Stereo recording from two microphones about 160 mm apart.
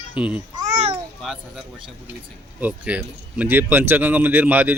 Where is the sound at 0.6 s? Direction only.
45° right (ahead or behind).